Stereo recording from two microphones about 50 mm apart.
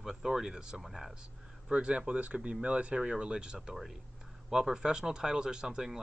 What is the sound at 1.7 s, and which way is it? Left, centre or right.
Speech, centre.